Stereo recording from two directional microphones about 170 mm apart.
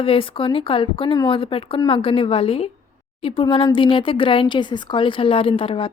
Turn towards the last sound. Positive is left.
turn(degrees=30)  # may be behind; listen again after turning